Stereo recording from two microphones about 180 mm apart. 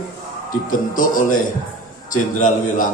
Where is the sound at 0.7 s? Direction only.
50° left (ahead or behind).